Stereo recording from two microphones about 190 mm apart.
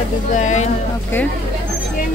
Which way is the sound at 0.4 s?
40° left (ahead or behind).